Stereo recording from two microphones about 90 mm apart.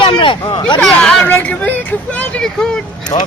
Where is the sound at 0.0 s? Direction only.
65° left (ahead or behind).